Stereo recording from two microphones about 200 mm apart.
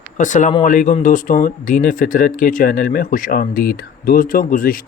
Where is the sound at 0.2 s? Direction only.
40° left (ahead or behind).